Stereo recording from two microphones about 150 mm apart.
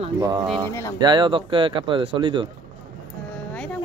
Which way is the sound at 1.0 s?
30° right (ahead or behind).